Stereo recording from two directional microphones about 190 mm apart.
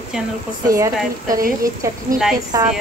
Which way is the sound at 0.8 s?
20° right (ahead or behind).